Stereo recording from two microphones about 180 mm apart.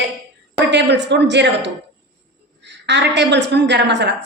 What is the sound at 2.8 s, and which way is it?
A woman's voice, 75° right (ahead or behind).